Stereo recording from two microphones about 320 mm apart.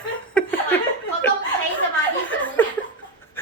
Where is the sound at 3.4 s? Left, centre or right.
Centre.